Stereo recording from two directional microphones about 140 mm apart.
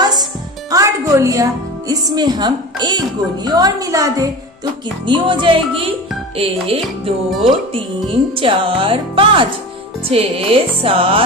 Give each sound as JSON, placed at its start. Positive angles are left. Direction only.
{"t": 0.0, "sound": "a woman's voice", "side_deg": -30}
{"t": 5.0, "sound": "speech", "side_deg": -35}
{"t": 7.2, "sound": "speech", "side_deg": 0}
{"t": 7.7, "sound": "speech", "side_deg": -40}